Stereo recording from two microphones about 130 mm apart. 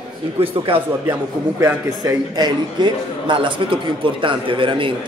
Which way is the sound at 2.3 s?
35° right (ahead or behind).